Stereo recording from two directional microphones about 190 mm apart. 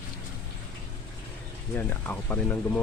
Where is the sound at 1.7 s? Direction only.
10° left (ahead or behind).